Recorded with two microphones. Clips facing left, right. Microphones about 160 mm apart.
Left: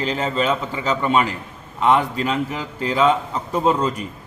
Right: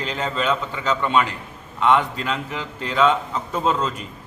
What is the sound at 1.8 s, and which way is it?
Speech, 35° left (ahead or behind).